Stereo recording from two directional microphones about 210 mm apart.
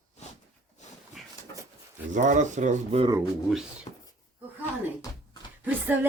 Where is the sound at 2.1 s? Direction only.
35° right (ahead or behind).